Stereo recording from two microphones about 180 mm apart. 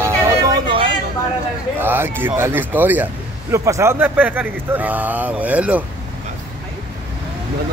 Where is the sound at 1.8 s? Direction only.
10° right (ahead or behind).